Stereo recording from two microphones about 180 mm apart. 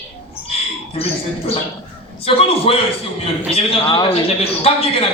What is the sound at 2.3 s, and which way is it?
A man's voice, 30° left (ahead or behind).